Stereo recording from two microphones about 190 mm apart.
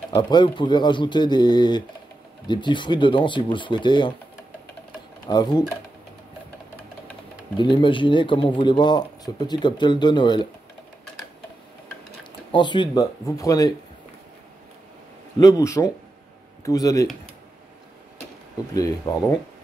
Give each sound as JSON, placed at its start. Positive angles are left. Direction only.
{"t": 0.1, "sound": "speech", "side_deg": 25}
{"t": 5.3, "sound": "speech", "side_deg": 20}
{"t": 7.5, "sound": "speech", "side_deg": 25}
{"t": 12.5, "sound": "speech", "side_deg": 25}
{"t": 15.3, "sound": "speech", "side_deg": 20}
{"t": 18.7, "sound": "speech", "side_deg": 20}